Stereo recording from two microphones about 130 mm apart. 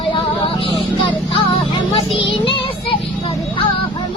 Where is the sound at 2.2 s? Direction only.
40° left (ahead or behind).